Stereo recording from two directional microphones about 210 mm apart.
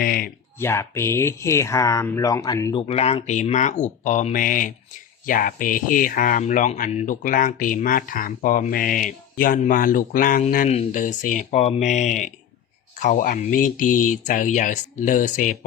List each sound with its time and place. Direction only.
0.0 s speech: 45° left (ahead or behind)
0.6 s speech: 10° left (ahead or behind)
2.8 s speech: 30° left (ahead or behind)